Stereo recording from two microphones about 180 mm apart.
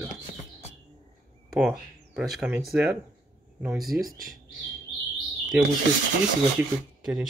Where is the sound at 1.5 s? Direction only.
Centre (ahead or behind).